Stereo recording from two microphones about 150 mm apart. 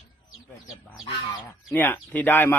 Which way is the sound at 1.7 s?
10° left (ahead or behind).